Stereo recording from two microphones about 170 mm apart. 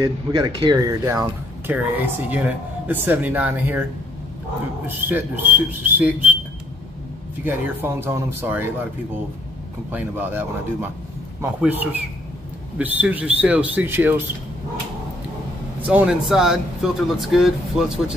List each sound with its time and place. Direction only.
0.0 s speech: 20° right (ahead or behind)
4.8 s speech: 10° right (ahead or behind)
7.4 s speech: 15° right (ahead or behind)
9.8 s speech: 10° right (ahead or behind)
15.8 s speech: 10° right (ahead or behind)